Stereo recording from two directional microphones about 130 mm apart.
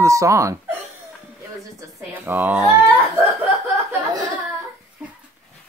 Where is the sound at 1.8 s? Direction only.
20° right (ahead or behind).